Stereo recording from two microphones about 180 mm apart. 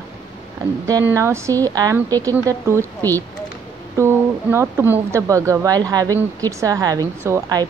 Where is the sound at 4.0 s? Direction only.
15° right (ahead or behind).